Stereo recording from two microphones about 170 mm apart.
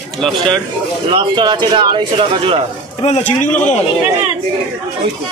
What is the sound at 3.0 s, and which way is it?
Speech, 45° left (ahead or behind).